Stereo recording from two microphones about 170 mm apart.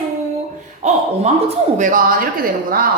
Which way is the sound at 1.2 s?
45° right (ahead or behind).